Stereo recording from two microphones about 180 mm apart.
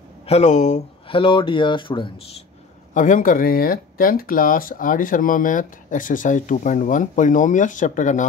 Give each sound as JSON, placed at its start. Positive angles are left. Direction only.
{"t": 0.3, "sound": "speech", "side_deg": 40}
{"t": 2.9, "sound": "speech", "side_deg": 45}